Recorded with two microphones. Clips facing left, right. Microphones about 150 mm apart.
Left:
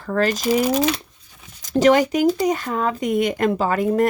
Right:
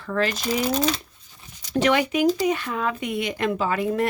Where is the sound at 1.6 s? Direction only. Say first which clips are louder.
Left 6 dB; 40° left (ahead or behind).